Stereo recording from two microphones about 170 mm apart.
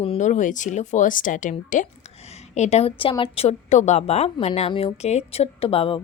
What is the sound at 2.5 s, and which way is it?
A woman's voice, 40° left (ahead or behind).